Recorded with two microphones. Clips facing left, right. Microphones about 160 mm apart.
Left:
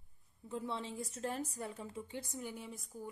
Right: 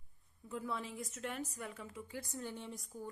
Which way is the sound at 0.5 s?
30° left (ahead or behind).